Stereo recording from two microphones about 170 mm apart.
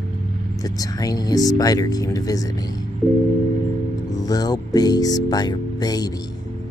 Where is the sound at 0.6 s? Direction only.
20° left (ahead or behind).